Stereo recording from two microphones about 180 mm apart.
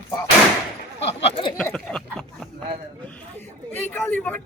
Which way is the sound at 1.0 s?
30° left (ahead or behind).